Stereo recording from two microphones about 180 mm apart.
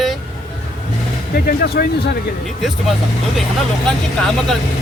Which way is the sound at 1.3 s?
55° left (ahead or behind).